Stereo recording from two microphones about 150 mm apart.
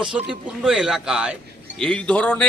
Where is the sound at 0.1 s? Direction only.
10° right (ahead or behind).